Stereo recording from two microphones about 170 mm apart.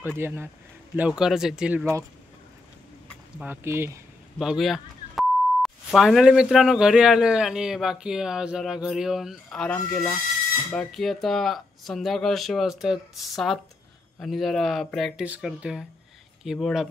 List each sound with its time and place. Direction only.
0.2 s speech: 15° right (ahead or behind)
3.3 s speech: 15° right (ahead or behind)
4.4 s speech: centre (ahead or behind)